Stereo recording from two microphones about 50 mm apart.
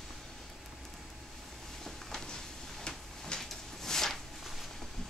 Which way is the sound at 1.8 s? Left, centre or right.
Centre.